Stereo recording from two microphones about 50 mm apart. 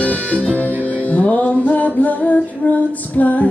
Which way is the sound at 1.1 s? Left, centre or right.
Left.